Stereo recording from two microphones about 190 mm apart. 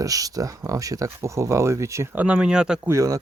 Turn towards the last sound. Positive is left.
turn(degrees=-15)  # may be behind; listen again after turning